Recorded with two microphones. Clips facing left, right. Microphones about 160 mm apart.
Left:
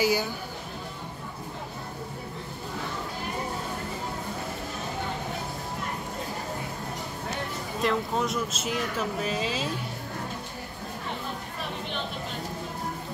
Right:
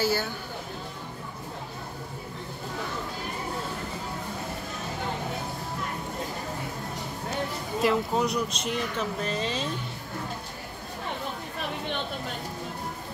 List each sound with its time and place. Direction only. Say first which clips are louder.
0.0 s speech: left 2 dB; 15° left (ahead or behind)
7.8 s speech: right 2 dB; centre (ahead or behind)